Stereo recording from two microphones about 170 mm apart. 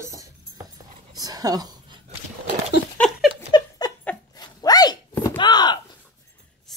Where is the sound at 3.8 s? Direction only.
20° left (ahead or behind).